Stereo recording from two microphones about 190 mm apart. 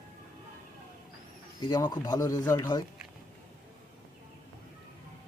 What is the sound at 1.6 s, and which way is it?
Speech, 20° left (ahead or behind).